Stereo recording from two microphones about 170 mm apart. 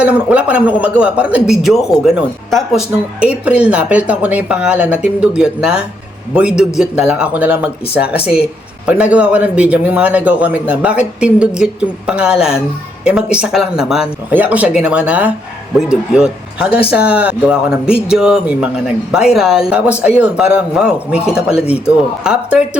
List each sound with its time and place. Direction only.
0.0 s a man's voice: 5° right (ahead or behind)